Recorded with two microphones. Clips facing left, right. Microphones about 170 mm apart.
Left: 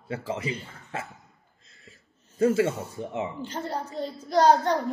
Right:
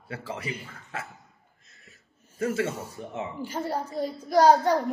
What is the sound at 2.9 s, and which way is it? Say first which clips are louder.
Speech: left 3 dB; 25° left (ahead or behind).